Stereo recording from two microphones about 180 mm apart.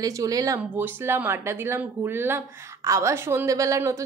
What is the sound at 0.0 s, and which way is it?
Speech, 20° right (ahead or behind).